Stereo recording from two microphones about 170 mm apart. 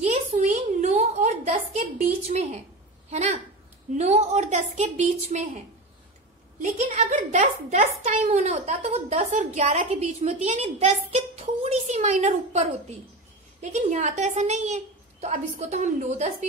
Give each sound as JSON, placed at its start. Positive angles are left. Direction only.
{"t": 0.0, "sound": "a sound", "side_deg": -45}
{"t": 3.1, "sound": "a woman's voice", "side_deg": -40}
{"t": 6.6, "sound": "a woman's voice", "side_deg": -45}